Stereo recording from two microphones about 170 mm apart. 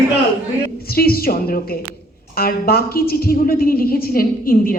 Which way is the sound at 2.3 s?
65° left (ahead or behind).